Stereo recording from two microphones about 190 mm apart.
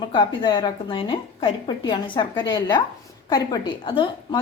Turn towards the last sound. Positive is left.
turn(degrees=25)  # may be behind; listen again after turning